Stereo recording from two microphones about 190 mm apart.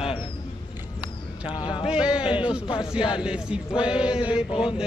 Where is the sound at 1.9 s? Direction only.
5° right (ahead or behind).